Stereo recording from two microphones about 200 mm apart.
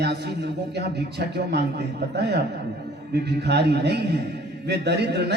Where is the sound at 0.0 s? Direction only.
55° right (ahead or behind).